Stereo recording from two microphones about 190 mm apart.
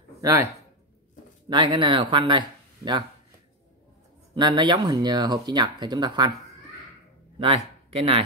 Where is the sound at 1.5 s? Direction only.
25° right (ahead or behind).